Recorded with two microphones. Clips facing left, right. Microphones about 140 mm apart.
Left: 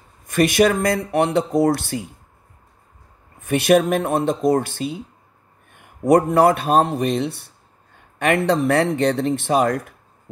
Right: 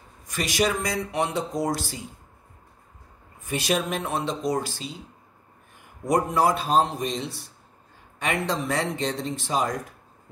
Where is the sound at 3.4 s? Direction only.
60° left (ahead or behind).